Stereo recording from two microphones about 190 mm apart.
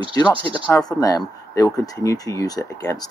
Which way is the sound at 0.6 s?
20° left (ahead or behind).